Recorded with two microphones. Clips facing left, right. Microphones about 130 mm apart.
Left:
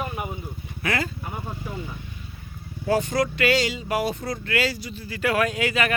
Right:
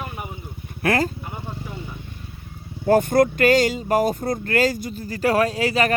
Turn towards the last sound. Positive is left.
turn(degrees=-35)  # may be behind; listen again after turning